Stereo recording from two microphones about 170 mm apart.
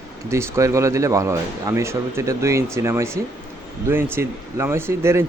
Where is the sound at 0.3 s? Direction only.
15° right (ahead or behind).